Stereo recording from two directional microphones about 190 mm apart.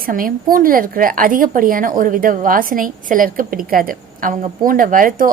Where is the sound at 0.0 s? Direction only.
50° right (ahead or behind).